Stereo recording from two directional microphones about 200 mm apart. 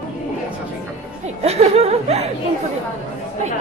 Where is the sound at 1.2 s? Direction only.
30° right (ahead or behind).